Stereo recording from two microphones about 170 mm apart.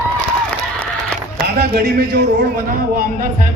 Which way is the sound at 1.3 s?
70° right (ahead or behind).